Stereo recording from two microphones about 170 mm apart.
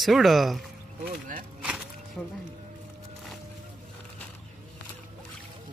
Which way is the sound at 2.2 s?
10° left (ahead or behind).